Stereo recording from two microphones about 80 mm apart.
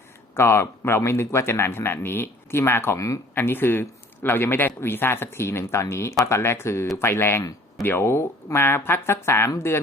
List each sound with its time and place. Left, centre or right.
0.3 s speech: left
3.3 s speech: left